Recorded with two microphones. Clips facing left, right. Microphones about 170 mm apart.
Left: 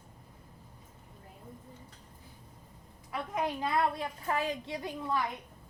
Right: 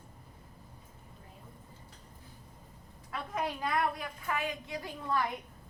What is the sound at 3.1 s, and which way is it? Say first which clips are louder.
A woman's voice: left 2 dB; 20° left (ahead or behind).